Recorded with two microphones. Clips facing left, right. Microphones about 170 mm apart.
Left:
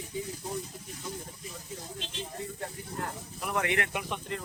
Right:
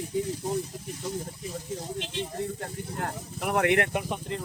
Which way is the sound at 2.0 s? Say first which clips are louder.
Right 6 dB; 70° right (ahead or behind).